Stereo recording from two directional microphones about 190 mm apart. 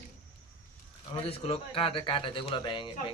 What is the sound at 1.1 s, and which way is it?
Speech, 30° left (ahead or behind).